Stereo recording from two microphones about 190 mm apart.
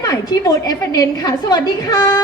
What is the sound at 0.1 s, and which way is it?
A woman's voice, 20° left (ahead or behind).